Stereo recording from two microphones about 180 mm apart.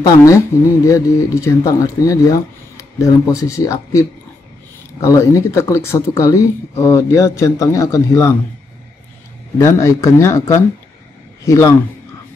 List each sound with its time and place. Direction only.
0.0 s speech: 15° left (ahead or behind)
9.6 s speech: 15° left (ahead or behind)